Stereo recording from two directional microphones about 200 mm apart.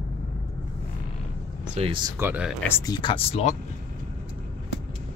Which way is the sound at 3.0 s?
25° left (ahead or behind).